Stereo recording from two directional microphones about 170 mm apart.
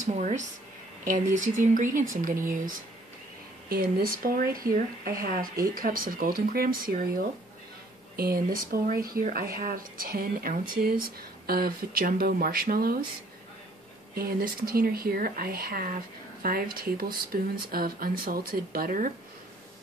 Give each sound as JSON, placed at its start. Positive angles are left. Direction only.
{"t": 0.1, "sound": "speech", "side_deg": -45}
{"t": 8.2, "sound": "speech", "side_deg": -60}
{"t": 14.1, "sound": "speech", "side_deg": -60}